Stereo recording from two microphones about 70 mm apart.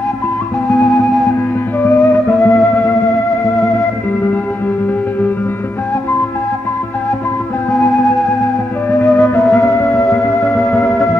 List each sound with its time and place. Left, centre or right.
0.7 s music: left
9.0 s music: left